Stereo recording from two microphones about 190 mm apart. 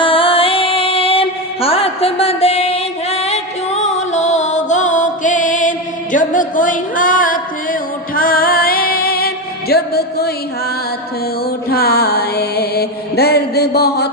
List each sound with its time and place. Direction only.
0.0 s music: 30° left (ahead or behind); by 10.3 s 55° left (ahead or behind)
11.7 s mantra: 55° left (ahead or behind)